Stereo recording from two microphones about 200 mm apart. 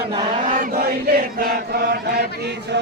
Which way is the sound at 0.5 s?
45° right (ahead or behind).